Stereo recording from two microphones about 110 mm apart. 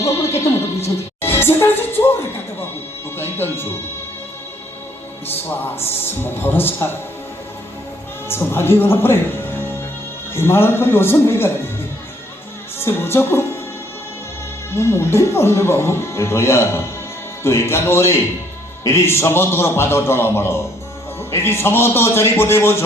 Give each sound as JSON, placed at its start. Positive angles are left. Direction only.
{"t": 1.2, "sound": "speech", "side_deg": 20}
{"t": 3.2, "sound": "speech", "side_deg": 20}
{"t": 5.3, "sound": "speech", "side_deg": 20}
{"t": 8.3, "sound": "speech", "side_deg": 20}
{"t": 12.8, "sound": "speech", "side_deg": 20}
{"t": 14.7, "sound": "speech", "side_deg": 25}